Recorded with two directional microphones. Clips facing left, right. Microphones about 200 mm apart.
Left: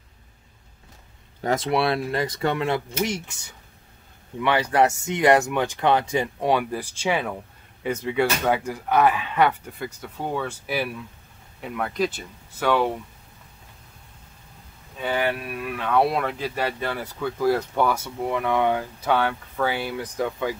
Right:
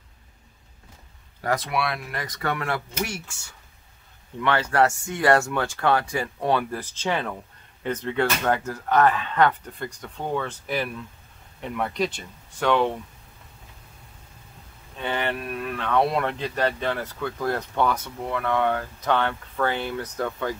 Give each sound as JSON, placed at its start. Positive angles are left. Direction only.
{"t": 1.4, "sound": "speech", "side_deg": 25}
{"t": 15.0, "sound": "speech", "side_deg": 5}